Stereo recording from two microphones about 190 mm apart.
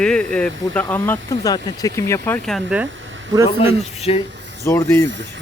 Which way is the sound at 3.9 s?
35° left (ahead or behind).